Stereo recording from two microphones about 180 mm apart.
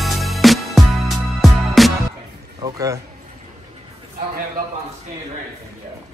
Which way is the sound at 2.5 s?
20° right (ahead or behind).